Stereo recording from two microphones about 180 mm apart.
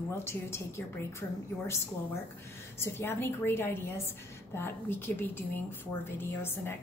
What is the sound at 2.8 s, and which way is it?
A woman's voice, 10° left (ahead or behind).